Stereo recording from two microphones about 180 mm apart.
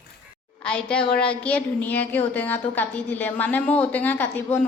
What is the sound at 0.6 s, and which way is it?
A woman's voice, 5° left (ahead or behind).